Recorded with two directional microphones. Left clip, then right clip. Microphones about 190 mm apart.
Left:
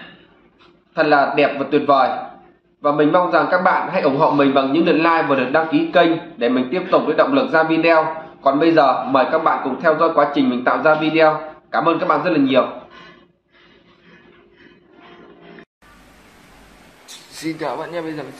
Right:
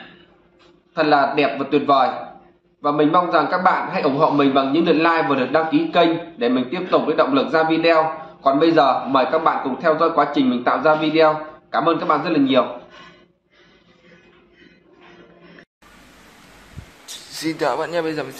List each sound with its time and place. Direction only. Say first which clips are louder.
0.9 s a man's voice: left 2 dB; 5° left (ahead or behind)
17.0 s a man's voice: right 2 dB; 25° right (ahead or behind)